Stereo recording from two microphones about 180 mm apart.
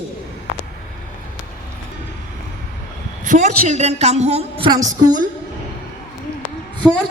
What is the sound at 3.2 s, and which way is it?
A woman's voice, 45° right (ahead or behind).